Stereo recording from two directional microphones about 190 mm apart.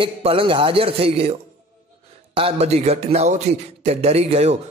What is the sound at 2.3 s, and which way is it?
A man's voice, 30° right (ahead or behind).